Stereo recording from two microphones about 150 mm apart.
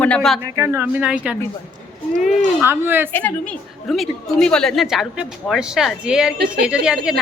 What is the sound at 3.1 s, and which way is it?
A woman's voice, 10° left (ahead or behind).